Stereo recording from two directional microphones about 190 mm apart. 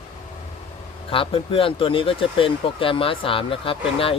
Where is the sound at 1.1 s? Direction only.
30° left (ahead or behind).